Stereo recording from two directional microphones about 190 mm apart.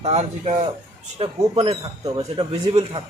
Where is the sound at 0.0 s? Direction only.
35° right (ahead or behind).